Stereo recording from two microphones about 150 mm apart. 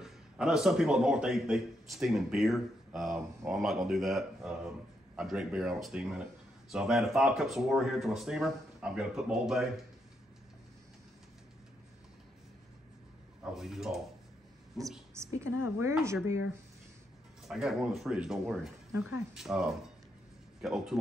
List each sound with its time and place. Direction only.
0.0 s a man's voice: 5° right (ahead or behind)
13.6 s a man's voice: 5° right (ahead or behind)
15.1 s a woman's voice: 20° right (ahead or behind)
17.4 s a man's voice: centre (ahead or behind)